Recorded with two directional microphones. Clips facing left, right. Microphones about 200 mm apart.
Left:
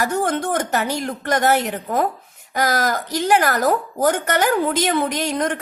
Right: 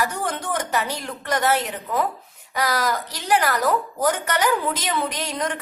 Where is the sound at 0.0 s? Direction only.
50° left (ahead or behind).